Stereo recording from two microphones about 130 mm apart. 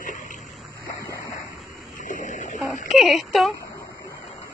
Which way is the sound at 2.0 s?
90° left.